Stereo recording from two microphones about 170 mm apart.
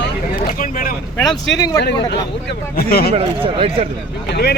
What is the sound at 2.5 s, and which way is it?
Speech, 65° left (ahead or behind).